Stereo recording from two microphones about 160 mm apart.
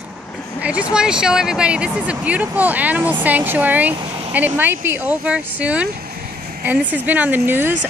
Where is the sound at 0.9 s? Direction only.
5° right (ahead or behind).